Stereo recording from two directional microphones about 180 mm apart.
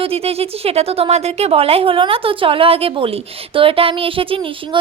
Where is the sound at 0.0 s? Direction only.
35° right (ahead or behind).